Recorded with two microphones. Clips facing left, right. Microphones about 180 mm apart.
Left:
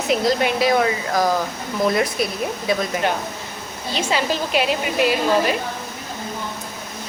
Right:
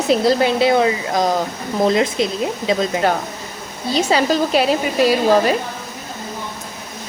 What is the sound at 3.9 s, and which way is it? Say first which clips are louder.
Speech: right 6 dB; 35° right (ahead or behind).